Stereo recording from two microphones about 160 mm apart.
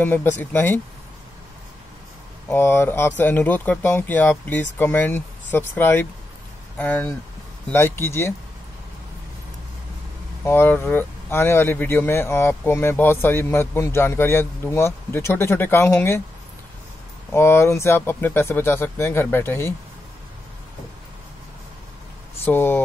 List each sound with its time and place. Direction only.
0.0 s speech: 10° left (ahead or behind)
2.5 s speech: 15° left (ahead or behind)
10.4 s speech: 15° left (ahead or behind)
17.3 s speech: 15° left (ahead or behind)
22.4 s speech: 15° left (ahead or behind)